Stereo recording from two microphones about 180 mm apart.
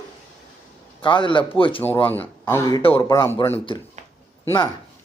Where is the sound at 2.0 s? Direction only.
10° left (ahead or behind); by 3.0 s 25° left (ahead or behind).